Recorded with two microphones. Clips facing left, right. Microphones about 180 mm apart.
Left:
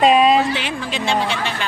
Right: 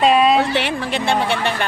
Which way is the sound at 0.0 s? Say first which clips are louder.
Left 1 dB; centre (ahead or behind).